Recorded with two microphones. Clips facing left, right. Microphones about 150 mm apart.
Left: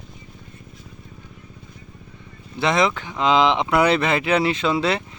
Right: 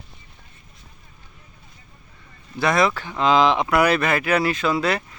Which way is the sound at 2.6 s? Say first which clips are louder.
Even; 20° left (ahead or behind).